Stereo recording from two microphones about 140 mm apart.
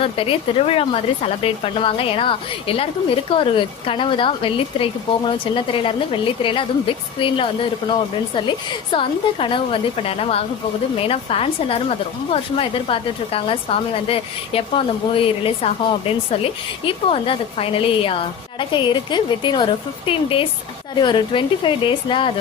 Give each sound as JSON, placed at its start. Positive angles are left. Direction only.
{"t": 0.0, "sound": "a woman's voice", "side_deg": 40}